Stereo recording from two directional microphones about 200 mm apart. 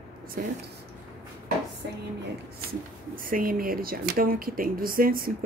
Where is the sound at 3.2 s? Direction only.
45° right (ahead or behind).